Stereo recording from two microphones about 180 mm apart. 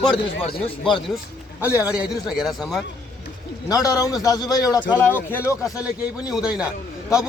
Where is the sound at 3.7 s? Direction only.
20° left (ahead or behind).